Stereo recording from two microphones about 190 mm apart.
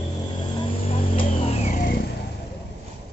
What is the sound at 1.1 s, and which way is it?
Vehicle, 40° left (ahead or behind).